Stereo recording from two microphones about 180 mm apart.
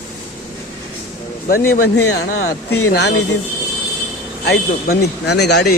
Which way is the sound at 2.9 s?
65° left (ahead or behind).